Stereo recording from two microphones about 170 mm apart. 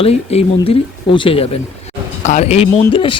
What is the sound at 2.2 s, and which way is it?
Speech, 45° left (ahead or behind).